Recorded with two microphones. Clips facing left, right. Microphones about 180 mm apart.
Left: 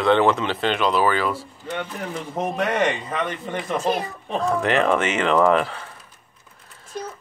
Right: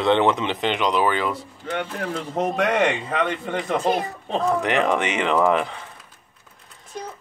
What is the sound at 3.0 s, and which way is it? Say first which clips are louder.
Speech: right 3 dB; 60° right (ahead or behind).